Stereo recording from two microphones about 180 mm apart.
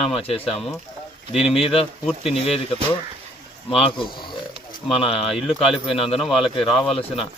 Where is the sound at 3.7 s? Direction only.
30° left (ahead or behind).